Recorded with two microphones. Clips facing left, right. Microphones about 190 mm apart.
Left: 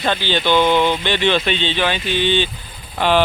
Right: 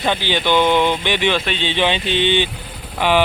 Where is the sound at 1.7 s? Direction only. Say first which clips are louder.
Right 1 dB; 20° right (ahead or behind).